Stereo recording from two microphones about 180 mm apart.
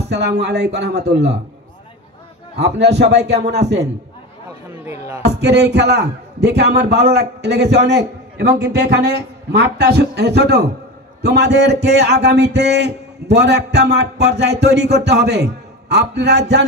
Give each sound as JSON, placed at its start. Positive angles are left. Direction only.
{"t": 0.0, "sound": "a man's voice", "side_deg": -70}
{"t": 2.6, "sound": "a man's voice", "side_deg": -70}
{"t": 5.2, "sound": "a man's voice", "side_deg": -65}